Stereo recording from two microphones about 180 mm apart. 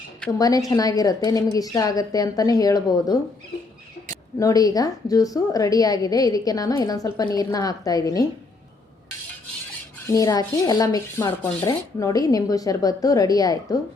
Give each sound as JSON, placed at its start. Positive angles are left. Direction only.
{"t": 0.3, "sound": "a woman's voice", "side_deg": 20}
{"t": 4.4, "sound": "a woman's voice", "side_deg": 20}
{"t": 10.1, "sound": "a woman's voice", "side_deg": 20}